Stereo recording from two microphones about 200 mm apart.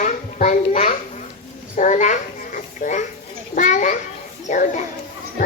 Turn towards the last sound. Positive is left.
turn(degrees=40)  # may be behind; listen again after turning